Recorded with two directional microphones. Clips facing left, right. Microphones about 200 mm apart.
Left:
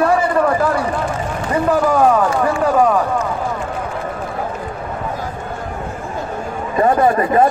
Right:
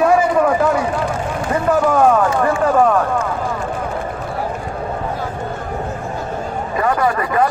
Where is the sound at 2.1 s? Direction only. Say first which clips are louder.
Even; centre (ahead or behind).